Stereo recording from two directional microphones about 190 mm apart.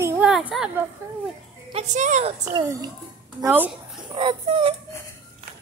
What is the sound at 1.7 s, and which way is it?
Speech, 35° right (ahead or behind).